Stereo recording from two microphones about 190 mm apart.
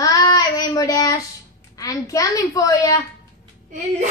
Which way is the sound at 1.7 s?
20° left (ahead or behind).